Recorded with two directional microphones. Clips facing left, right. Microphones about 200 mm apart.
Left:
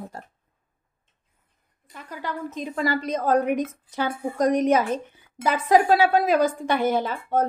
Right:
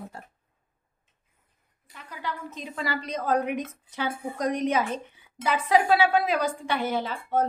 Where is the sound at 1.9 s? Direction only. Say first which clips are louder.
Left 3 dB; 45° left (ahead or behind).